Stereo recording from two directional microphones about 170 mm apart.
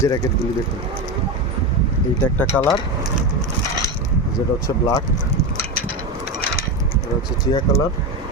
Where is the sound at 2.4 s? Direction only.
10° left (ahead or behind).